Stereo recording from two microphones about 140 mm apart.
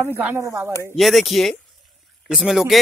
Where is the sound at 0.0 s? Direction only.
15° right (ahead or behind).